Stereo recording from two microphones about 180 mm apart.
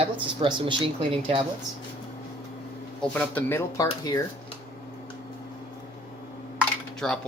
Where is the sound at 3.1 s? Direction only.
10° left (ahead or behind).